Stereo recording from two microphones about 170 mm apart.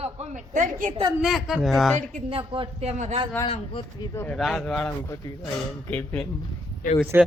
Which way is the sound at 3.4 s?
35° left (ahead or behind).